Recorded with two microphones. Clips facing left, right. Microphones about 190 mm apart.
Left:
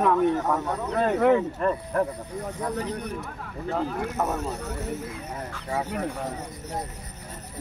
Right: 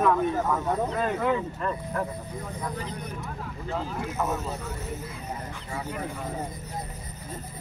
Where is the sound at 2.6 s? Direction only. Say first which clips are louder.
Left 7 dB; 70° left (ahead or behind).